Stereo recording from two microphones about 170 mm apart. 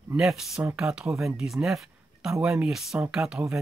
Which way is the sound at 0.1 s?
Centre (ahead or behind).